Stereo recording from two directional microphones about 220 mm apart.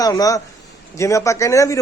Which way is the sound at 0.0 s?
15° left (ahead or behind).